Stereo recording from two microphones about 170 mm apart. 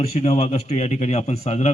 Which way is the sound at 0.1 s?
40° left (ahead or behind).